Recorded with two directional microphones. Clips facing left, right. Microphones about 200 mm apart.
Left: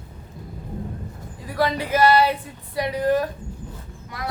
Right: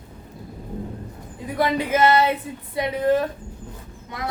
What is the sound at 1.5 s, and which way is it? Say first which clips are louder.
Female singing: right 1 dB; 20° right (ahead or behind).